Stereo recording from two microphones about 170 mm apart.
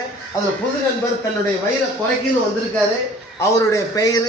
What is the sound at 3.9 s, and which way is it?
Speech, 20° left (ahead or behind).